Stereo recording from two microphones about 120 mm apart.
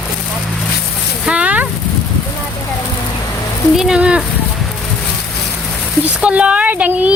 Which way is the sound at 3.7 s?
5° right (ahead or behind).